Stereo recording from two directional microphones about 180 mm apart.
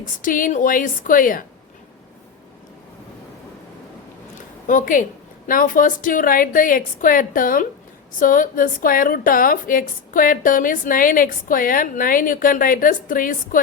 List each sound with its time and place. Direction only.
0.0 s a woman's voice: 50° left (ahead or behind)
4.6 s a woman's voice: 45° left (ahead or behind)